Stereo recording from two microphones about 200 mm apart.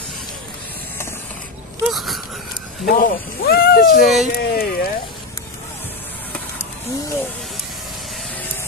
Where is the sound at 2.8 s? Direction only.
45° left (ahead or behind).